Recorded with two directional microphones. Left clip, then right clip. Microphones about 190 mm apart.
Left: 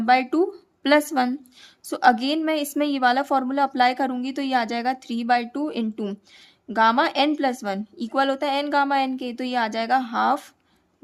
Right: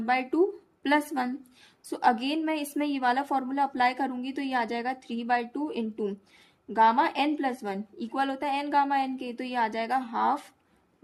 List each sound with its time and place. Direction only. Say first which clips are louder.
0.0 s speech: left 6 dB; 30° left (ahead or behind)